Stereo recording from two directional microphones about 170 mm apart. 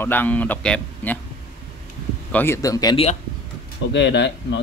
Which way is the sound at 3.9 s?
90° left.